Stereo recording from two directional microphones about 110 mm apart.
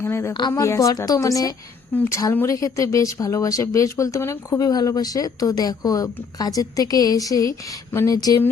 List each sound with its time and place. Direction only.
0.0 s a woman's voice: 25° left (ahead or behind)